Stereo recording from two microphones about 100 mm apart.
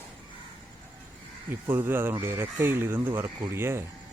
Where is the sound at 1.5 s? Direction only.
20° right (ahead or behind).